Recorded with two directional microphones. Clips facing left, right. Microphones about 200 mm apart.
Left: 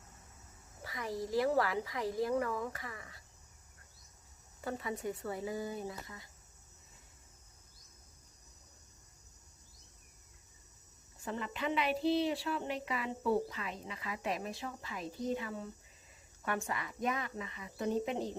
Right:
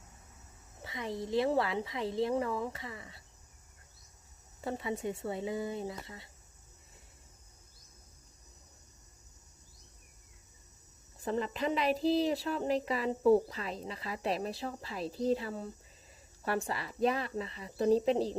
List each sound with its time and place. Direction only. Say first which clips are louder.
0.8 s a woman's voice: right 1 dB; 25° right (ahead or behind)
4.6 s a woman's voice: right 3 dB; 25° right (ahead or behind)
11.2 s speech: right 5 dB; 35° right (ahead or behind)